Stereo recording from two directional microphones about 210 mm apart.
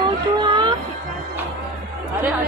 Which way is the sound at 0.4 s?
20° right (ahead or behind).